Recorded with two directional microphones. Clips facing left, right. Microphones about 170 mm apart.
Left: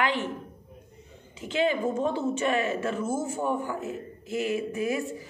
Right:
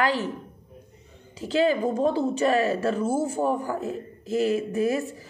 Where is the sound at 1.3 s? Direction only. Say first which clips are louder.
Right 4 dB; 35° right (ahead or behind).